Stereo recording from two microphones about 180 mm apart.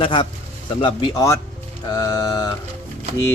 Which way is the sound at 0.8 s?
20° left (ahead or behind).